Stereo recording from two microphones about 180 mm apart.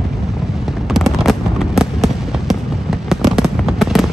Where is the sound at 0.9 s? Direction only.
Centre (ahead or behind).